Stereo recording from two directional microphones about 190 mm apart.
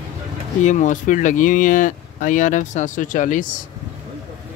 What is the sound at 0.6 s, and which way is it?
Speech, 40° left (ahead or behind).